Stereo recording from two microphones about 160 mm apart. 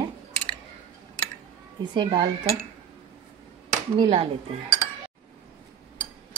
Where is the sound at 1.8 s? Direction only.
30° right (ahead or behind).